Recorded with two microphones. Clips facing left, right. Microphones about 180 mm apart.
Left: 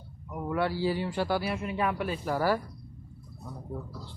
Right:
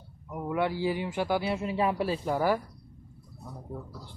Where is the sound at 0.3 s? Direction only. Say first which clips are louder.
Even; 15° right (ahead or behind); by 2.3 s 30° right (ahead or behind).